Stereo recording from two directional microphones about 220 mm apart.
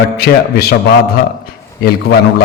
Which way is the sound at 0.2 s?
45° left (ahead or behind).